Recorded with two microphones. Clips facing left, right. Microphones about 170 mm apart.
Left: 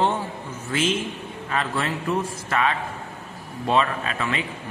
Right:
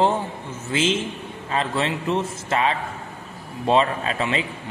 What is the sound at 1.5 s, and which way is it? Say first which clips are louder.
A man's voice: right 2 dB; 30° right (ahead or behind).